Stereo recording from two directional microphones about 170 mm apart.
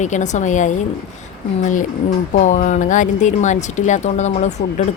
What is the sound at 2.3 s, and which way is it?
Speech, 45° left (ahead or behind).